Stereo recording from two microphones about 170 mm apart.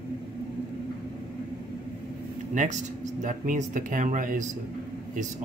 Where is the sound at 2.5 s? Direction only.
45° right (ahead or behind).